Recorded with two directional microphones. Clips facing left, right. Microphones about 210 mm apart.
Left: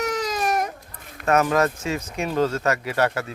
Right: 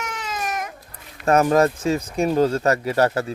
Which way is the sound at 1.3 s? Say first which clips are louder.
Right 3 dB; 35° right (ahead or behind).